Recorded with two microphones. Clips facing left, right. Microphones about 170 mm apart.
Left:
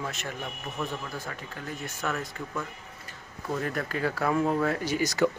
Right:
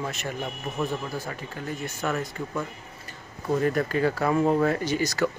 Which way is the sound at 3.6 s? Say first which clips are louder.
Right 7 dB; centre (ahead or behind).